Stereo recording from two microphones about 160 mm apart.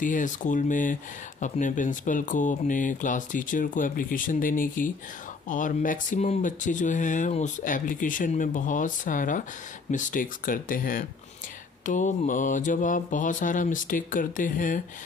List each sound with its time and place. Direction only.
0.0 s speech: 55° left (ahead or behind)